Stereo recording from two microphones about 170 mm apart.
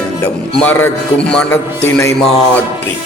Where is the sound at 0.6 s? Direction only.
10° left (ahead or behind).